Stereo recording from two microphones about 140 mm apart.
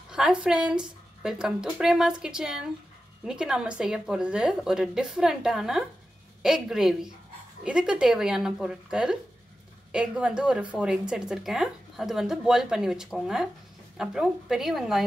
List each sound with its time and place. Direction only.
0.1 s speech: 5° right (ahead or behind)